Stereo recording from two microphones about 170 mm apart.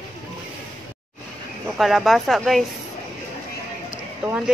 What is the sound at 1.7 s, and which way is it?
Speech, centre (ahead or behind).